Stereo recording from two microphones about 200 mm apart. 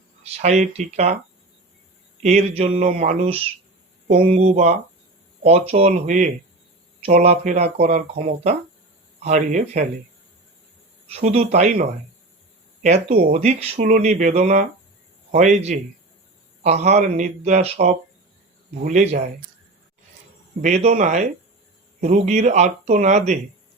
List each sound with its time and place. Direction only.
0.3 s speech: 35° right (ahead or behind)
2.2 s speech: 35° right (ahead or behind)
11.1 s speech: 30° right (ahead or behind)
20.6 s speech: 35° right (ahead or behind)